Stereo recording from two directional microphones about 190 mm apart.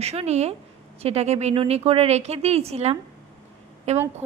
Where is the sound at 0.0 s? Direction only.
35° right (ahead or behind).